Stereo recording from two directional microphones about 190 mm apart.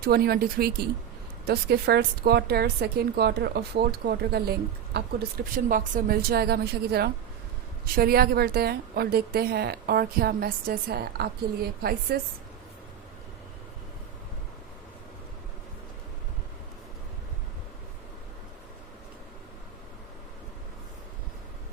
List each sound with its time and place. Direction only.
0.0 s a woman's voice: 55° right (ahead or behind)
5.5 s a woman's voice: 45° right (ahead or behind)